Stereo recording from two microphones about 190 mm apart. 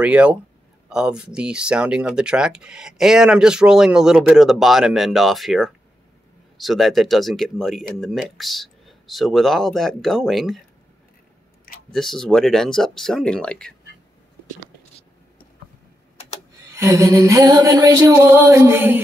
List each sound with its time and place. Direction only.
0.0 s music: 5° right (ahead or behind)
0.8 s speech: 5° right (ahead or behind)
11.9 s speech: centre (ahead or behind)
16.7 s music: 15° right (ahead or behind)